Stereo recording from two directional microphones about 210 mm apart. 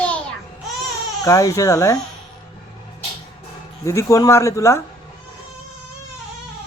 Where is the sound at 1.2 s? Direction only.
15° left (ahead or behind).